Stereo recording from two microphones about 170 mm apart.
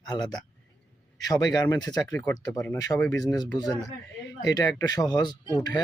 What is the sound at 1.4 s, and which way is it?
Speech, 20° left (ahead or behind).